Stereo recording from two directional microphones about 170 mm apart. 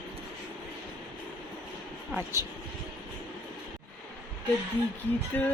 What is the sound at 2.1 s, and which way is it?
Speech, 15° right (ahead or behind).